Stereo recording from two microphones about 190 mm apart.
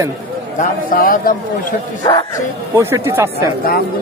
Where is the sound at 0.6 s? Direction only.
45° left (ahead or behind).